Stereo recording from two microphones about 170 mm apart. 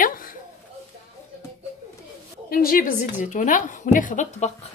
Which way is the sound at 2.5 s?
60° left (ahead or behind).